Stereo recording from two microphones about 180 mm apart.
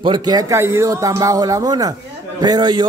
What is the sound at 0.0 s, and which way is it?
A man's voice, 25° right (ahead or behind).